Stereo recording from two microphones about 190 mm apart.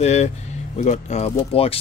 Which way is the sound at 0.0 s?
35° left (ahead or behind).